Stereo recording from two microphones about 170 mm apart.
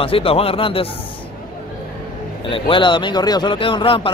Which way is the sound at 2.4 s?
30° left (ahead or behind).